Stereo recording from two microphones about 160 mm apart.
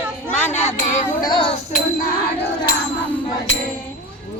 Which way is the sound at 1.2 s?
30° left (ahead or behind).